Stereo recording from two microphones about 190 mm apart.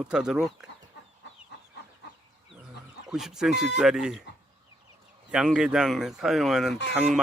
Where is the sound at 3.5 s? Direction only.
65° left (ahead or behind).